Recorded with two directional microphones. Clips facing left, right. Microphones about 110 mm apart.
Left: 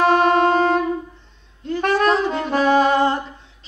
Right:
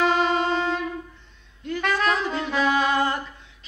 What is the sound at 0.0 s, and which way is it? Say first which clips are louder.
Music: left 6 dB; 50° left (ahead or behind).